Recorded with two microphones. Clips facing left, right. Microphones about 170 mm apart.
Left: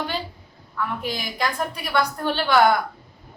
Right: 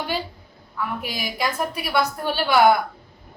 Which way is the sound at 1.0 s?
5° right (ahead or behind).